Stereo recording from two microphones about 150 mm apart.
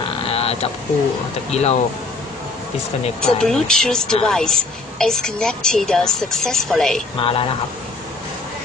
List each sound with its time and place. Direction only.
0.3 s a sound: 40° left (ahead or behind)
1.5 s speech: 45° left (ahead or behind)
3.2 s speech: 5° left (ahead or behind)
7.2 s speech: 35° left (ahead or behind)